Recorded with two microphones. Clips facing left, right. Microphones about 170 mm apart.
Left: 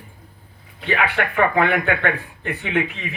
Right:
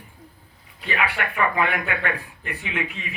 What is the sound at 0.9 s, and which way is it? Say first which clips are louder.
Speech: left 5 dB; 70° left (ahead or behind).